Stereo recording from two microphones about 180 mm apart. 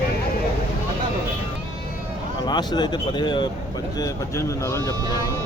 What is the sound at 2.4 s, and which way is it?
Speech, 25° left (ahead or behind).